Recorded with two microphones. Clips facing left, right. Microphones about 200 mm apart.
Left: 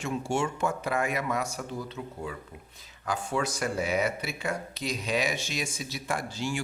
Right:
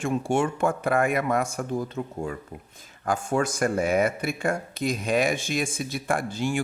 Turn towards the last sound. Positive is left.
turn(degrees=-55)  # may be behind; listen again after turning